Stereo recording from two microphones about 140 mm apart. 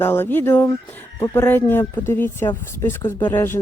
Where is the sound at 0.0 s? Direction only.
15° left (ahead or behind).